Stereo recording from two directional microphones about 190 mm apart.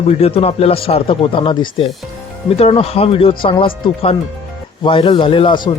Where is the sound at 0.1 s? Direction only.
30° left (ahead or behind).